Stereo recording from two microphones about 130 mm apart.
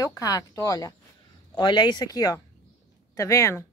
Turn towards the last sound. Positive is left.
turn(degrees=25)  # may be behind; listen again after turning